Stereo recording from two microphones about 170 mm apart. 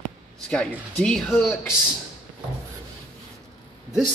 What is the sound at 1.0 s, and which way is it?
Speech, 5° left (ahead or behind).